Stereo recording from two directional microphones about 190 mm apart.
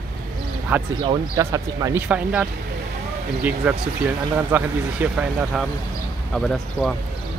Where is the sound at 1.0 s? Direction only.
20° right (ahead or behind).